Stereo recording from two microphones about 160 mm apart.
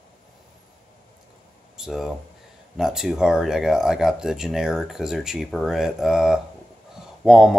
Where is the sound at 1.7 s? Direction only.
Centre (ahead or behind).